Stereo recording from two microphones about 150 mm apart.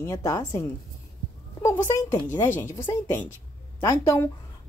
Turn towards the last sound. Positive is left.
turn(degrees=15)  # may be behind; listen again after turning